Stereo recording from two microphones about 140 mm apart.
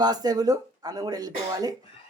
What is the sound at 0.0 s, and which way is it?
Speech, 30° right (ahead or behind).